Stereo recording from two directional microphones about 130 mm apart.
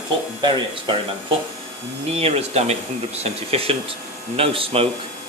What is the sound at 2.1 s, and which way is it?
Speech, 50° right (ahead or behind).